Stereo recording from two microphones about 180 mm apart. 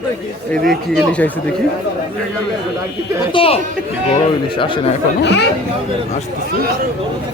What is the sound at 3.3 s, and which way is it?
Speech, 30° left (ahead or behind).